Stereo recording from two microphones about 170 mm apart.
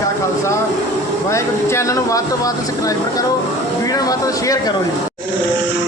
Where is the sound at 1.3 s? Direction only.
15° left (ahead or behind).